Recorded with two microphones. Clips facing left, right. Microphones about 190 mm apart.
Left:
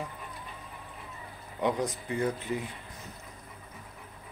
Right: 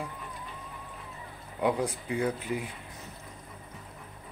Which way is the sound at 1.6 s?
10° right (ahead or behind).